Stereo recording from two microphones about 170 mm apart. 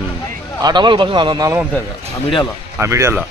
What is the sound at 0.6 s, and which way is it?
Speech, 25° right (ahead or behind).